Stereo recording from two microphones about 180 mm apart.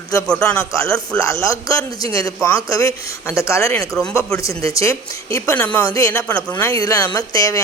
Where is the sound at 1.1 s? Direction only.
15° left (ahead or behind).